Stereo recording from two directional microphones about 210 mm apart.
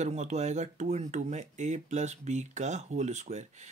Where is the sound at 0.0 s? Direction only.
35° right (ahead or behind).